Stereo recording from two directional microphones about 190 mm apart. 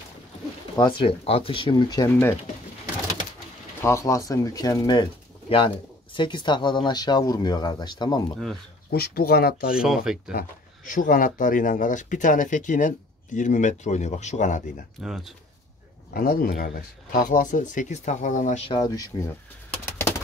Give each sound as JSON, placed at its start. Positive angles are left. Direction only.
{"t": 0.7, "sound": "speech", "side_deg": 25}
{"t": 3.8, "sound": "speech", "side_deg": 15}
{"t": 6.1, "sound": "speech", "side_deg": 25}
{"t": 8.9, "sound": "speech", "side_deg": 55}
{"t": 9.8, "sound": "speech", "side_deg": -5}
{"t": 10.9, "sound": "speech", "side_deg": 45}
{"t": 15.0, "sound": "speech", "side_deg": 0}
{"t": 16.1, "sound": "speech", "side_deg": 50}
{"t": 18.7, "sound": "speech", "side_deg": 20}